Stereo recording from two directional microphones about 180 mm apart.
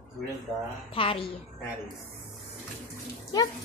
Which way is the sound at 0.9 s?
30° left (ahead or behind).